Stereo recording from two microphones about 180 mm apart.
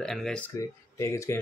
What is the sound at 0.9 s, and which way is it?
Speech, 15° left (ahead or behind).